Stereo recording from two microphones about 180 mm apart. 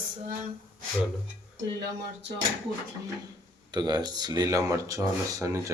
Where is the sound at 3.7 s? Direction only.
25° right (ahead or behind).